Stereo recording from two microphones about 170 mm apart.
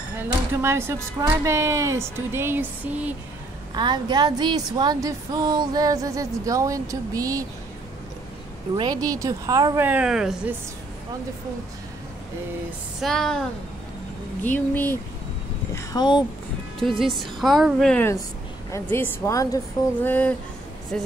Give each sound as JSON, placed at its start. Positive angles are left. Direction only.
{"t": 0.2, "sound": "speech", "side_deg": -15}
{"t": 3.7, "sound": "a woman's voice", "side_deg": -25}
{"t": 8.7, "sound": "a woman's voice", "side_deg": -25}
{"t": 9.8, "sound": "a woman's voice", "side_deg": -5}
{"t": 13.0, "sound": "a woman's voice", "side_deg": 5}
{"t": 15.7, "sound": "a sound", "side_deg": 25}
{"t": 17.0, "sound": "a woman's voice", "side_deg": 0}
{"t": 18.7, "sound": "a woman's voice", "side_deg": 15}